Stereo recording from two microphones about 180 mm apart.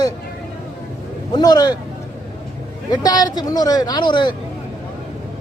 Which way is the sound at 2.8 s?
20° left (ahead or behind).